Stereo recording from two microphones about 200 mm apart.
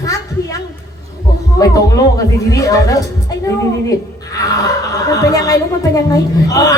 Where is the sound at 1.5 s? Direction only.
15° left (ahead or behind).